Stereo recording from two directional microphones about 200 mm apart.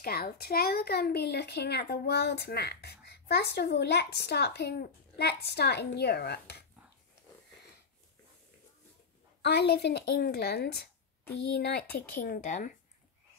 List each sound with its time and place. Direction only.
0.0 s speech: 50° left (ahead or behind)
9.4 s speech: 55° left (ahead or behind); by 12.7 s 40° left (ahead or behind)